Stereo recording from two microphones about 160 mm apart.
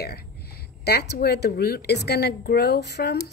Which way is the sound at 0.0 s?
80° left.